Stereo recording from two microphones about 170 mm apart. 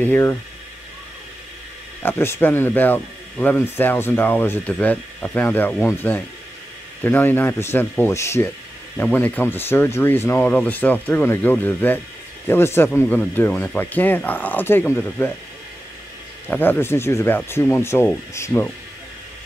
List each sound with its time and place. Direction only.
0.0 s speech: 10° left (ahead or behind)
2.0 s speech: 15° left (ahead or behind)
16.4 s speech: 10° left (ahead or behind)